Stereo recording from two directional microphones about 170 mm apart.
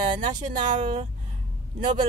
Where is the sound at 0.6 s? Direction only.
45° right (ahead or behind).